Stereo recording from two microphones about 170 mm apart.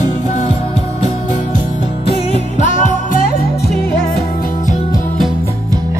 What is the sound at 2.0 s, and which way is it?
Music, 40° left (ahead or behind).